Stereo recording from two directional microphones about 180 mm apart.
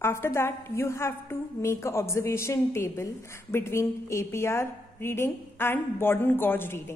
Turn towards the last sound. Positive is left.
turn(degrees=15)  # may be behind; listen again after turning